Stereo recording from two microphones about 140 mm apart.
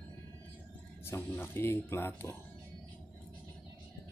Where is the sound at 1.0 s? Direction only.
15° left (ahead or behind).